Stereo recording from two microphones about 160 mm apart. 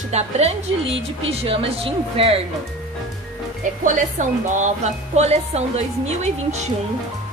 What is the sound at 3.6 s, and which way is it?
Speech, 55° right (ahead or behind).